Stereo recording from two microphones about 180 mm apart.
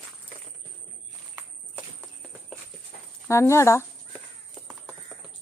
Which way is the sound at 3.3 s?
15° left (ahead or behind).